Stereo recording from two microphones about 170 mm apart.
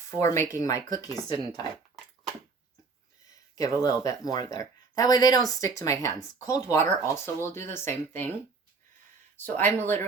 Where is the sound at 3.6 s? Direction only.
20° left (ahead or behind).